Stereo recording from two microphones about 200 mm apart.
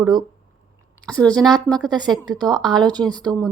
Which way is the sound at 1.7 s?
20° right (ahead or behind).